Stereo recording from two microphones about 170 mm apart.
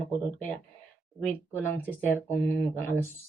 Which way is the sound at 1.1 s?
10° left (ahead or behind).